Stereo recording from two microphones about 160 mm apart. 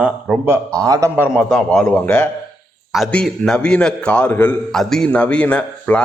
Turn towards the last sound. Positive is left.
turn(degrees=10)  # may be behind; listen again after turning